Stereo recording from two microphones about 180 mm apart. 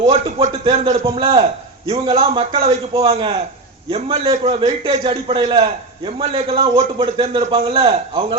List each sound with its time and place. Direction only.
0.0 s a man's voice: 35° right (ahead or behind)